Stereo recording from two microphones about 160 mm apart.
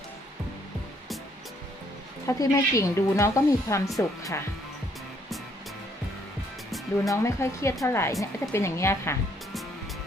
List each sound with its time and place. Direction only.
2.2 s a woman's voice: 20° left (ahead or behind)
6.7 s music: centre (ahead or behind)
7.1 s a woman's voice: 20° left (ahead or behind)